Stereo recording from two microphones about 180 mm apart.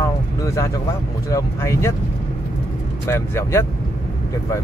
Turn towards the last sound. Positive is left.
turn(degrees=15)  # may be behind; listen again after turning